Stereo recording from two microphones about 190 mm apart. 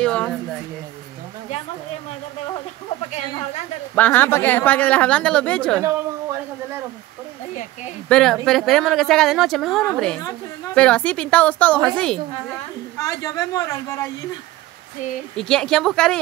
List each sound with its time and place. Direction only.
0.0 s speech: 5° left (ahead or behind)
3.1 s speech: 35° left (ahead or behind)
3.9 s a woman's voice: 10° left (ahead or behind)
8.1 s speech: 5° left (ahead or behind)
12.9 s a woman's voice: 15° left (ahead or behind)
15.3 s speech: 5° left (ahead or behind)